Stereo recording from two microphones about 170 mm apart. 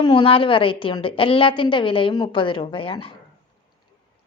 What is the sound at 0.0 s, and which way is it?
A woman's voice, 30° left (ahead or behind).